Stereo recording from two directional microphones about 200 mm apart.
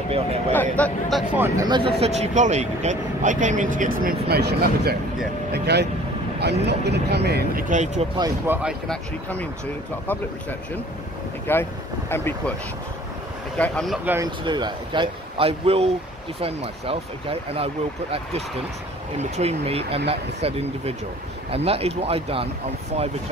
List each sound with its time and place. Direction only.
0.5 s speech: 10° left (ahead or behind)
1.3 s speech: 10° right (ahead or behind)
1.7 s speech: 25° right (ahead or behind); by 7.6 s 55° right (ahead or behind)
7.7 s speech: 35° right (ahead or behind)
8.2 s speech: 10° right (ahead or behind)
11.5 s speech: 10° left (ahead or behind)
13.6 s speech: 5° left (ahead or behind)
14.0 s a man's voice: 15° right (ahead or behind); by 17.6 s 30° right (ahead or behind)
19.1 s a man's voice: 30° right (ahead or behind)